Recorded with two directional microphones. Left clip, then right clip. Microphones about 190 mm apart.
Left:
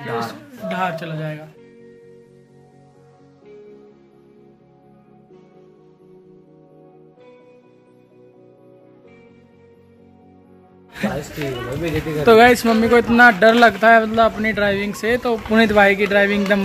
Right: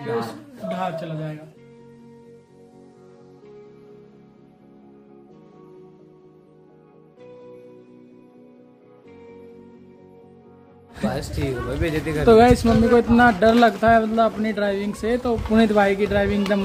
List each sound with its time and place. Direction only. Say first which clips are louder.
0.7 s a man's voice: left 4 dB; 10° left (ahead or behind)
10.9 s music: left 2 dB; centre (ahead or behind)
11.8 s speech: left 2 dB; centre (ahead or behind)